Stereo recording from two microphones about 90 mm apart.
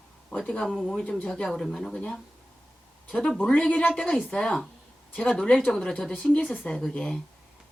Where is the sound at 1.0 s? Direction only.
15° left (ahead or behind).